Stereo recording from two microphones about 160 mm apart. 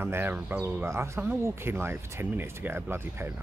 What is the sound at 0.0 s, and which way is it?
Speech, 15° right (ahead or behind).